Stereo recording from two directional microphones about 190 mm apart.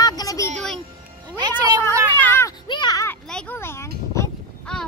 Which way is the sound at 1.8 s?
15° left (ahead or behind).